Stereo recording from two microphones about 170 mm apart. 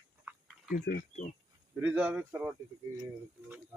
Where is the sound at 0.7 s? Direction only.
55° left (ahead or behind).